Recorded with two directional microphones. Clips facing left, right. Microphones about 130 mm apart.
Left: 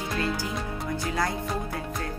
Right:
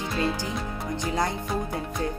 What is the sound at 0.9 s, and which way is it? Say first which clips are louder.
Music: right 2 dB; 20° right (ahead or behind).